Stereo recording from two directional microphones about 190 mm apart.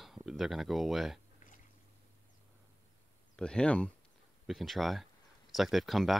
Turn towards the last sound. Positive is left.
turn(degrees=0)  # may be behind; listen again after turning